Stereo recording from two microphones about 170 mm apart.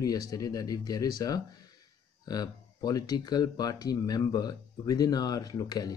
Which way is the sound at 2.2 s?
25° left (ahead or behind).